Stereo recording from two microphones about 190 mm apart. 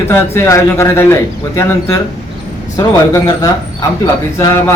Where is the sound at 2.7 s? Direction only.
20° left (ahead or behind).